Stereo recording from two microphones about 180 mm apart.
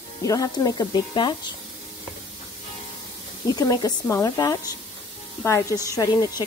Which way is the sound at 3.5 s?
20° left (ahead or behind).